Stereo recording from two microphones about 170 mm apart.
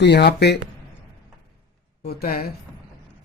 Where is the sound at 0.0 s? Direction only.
80° left.